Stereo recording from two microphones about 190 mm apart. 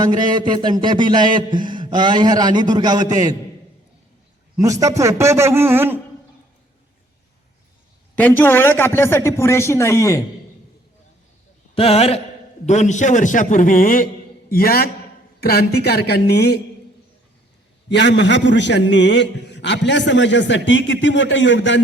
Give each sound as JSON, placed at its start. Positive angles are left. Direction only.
{"t": 0.0, "sound": "a man's voice", "side_deg": -20}
{"t": 4.5, "sound": "a man's voice", "side_deg": -15}
{"t": 8.1, "sound": "a man's voice", "side_deg": 10}
{"t": 11.7, "sound": "a man's voice", "side_deg": 30}
{"t": 17.8, "sound": "a man's voice", "side_deg": 70}